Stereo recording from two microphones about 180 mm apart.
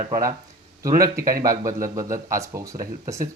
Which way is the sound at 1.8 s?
20° right (ahead or behind).